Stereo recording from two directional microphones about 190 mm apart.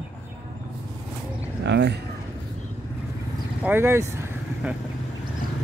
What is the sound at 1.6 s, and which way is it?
Speech, 65° right (ahead or behind).